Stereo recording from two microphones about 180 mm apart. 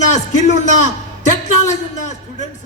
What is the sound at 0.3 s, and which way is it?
Speech, 40° left (ahead or behind).